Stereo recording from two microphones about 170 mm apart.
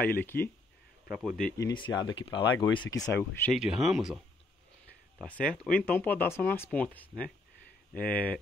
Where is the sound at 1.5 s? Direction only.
25° left (ahead or behind).